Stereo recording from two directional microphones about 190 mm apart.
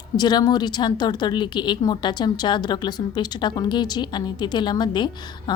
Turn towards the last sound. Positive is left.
turn(degrees=25)  # may be behind; listen again after turning